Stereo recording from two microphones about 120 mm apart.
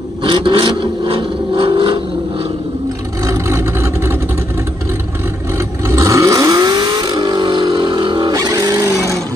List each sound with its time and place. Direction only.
0.2 s vehicle: 45° right (ahead or behind)
3.3 s vehicle: 20° right (ahead or behind)
5.9 s vehicle: 25° right (ahead or behind)